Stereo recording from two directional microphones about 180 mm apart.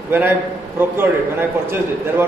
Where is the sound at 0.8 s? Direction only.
10° right (ahead or behind).